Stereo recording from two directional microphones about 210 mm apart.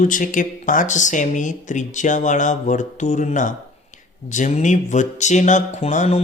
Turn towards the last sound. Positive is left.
turn(degrees=30)  # may be behind; listen again after turning